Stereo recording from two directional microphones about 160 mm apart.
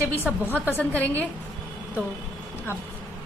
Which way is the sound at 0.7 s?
10° left (ahead or behind).